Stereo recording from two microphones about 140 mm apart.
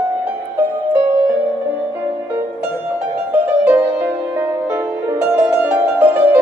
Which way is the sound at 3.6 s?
15° right (ahead or behind).